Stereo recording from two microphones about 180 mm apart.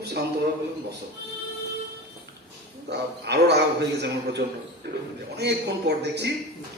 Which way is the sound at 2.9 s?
65° right (ahead or behind).